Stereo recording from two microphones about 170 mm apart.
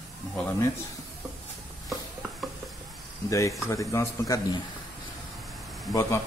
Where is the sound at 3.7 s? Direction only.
15° left (ahead or behind).